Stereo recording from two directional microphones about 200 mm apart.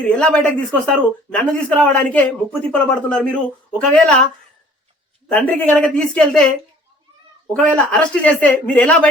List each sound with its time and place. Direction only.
0.1 s speech: 5° left (ahead or behind)
5.3 s speech: 5° left (ahead or behind)
7.5 s speech: 5° left (ahead or behind)